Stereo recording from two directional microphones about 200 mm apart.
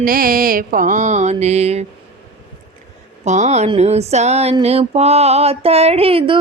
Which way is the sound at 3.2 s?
35° right (ahead or behind).